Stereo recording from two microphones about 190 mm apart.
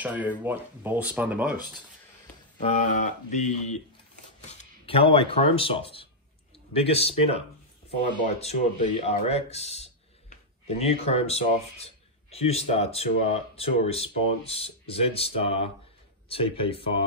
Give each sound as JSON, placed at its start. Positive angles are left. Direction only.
{"t": 0.0, "sound": "speech", "side_deg": -10}
{"t": 2.6, "sound": "speech", "side_deg": 40}